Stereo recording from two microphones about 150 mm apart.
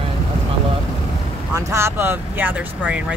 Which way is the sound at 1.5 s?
20° right (ahead or behind).